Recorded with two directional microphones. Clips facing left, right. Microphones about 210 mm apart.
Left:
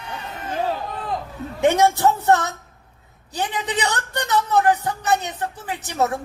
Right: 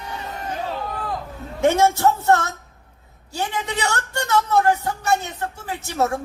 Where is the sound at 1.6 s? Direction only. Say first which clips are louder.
Even; 20° left (ahead or behind).